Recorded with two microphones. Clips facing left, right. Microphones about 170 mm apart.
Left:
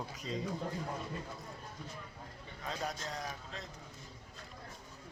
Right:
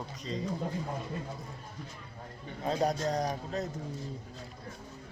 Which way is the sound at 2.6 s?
35° right (ahead or behind).